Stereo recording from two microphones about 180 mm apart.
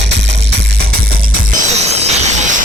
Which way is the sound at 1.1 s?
40° right (ahead or behind).